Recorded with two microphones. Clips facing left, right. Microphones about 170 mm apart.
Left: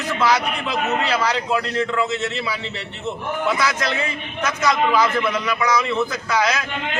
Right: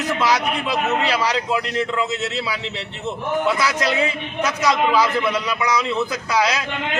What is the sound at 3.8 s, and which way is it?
A man's voice, 15° right (ahead or behind).